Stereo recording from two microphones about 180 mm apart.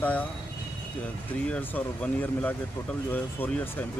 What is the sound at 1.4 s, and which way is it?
Speech, 5° left (ahead or behind).